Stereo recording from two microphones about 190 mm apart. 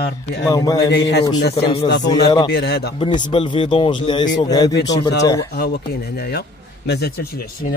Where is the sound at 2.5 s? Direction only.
60° left (ahead or behind).